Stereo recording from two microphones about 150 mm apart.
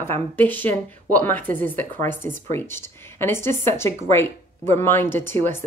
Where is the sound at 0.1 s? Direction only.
10° left (ahead or behind).